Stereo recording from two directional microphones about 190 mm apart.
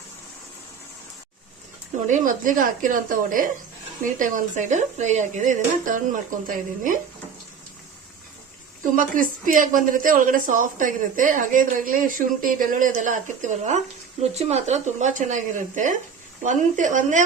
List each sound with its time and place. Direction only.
2.0 s a woman's voice: 45° right (ahead or behind)
8.8 s a woman's voice: 45° right (ahead or behind)